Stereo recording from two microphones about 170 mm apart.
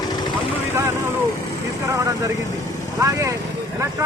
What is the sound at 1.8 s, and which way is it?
Vehicle, 20° right (ahead or behind).